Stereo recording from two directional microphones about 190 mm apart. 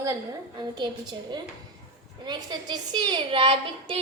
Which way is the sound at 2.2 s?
25° right (ahead or behind).